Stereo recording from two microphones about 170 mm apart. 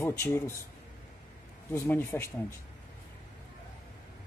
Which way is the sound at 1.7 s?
15° left (ahead or behind).